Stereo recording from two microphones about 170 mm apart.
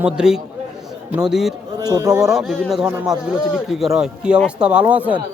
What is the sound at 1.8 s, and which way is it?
Speech, 20° right (ahead or behind).